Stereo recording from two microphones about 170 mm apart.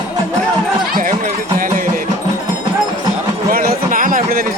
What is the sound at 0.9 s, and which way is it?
Run, 55° right (ahead or behind).